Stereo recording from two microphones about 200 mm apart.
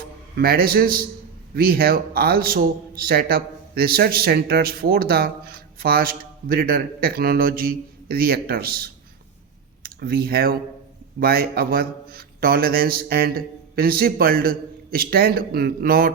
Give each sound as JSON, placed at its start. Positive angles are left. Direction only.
{"t": 0.3, "sound": "a man's voice", "side_deg": -50}